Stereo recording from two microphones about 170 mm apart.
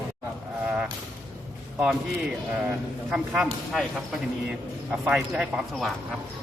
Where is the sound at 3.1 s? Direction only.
5° right (ahead or behind).